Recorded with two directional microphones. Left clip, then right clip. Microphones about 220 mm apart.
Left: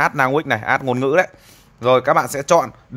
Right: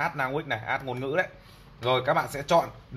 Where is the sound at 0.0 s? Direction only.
50° left (ahead or behind).